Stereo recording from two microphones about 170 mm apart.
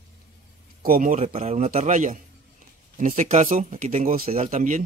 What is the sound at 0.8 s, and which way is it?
Speech, 55° right (ahead or behind).